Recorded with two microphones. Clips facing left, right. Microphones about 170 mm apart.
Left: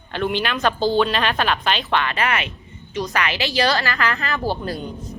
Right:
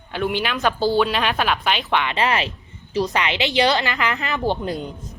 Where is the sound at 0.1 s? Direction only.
10° right (ahead or behind).